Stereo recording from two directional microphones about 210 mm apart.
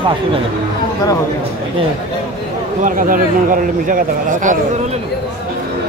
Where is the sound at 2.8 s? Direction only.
40° right (ahead or behind).